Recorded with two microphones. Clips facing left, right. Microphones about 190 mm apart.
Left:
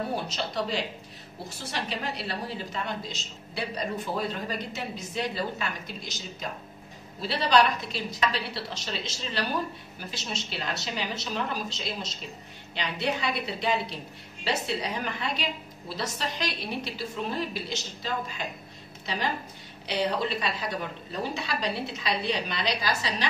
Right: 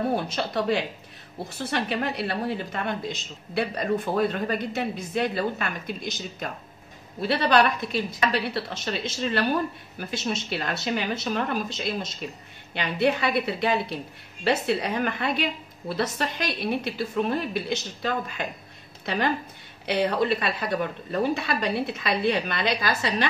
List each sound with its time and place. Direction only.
0.1 s a woman's voice: 55° right (ahead or behind)